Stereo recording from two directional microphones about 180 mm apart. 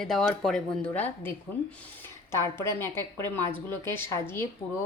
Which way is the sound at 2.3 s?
15° left (ahead or behind).